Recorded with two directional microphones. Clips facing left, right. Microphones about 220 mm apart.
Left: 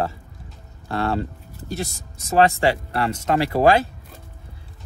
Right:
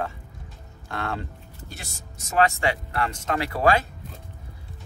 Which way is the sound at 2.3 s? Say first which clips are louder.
Left 5 dB; 35° left (ahead or behind).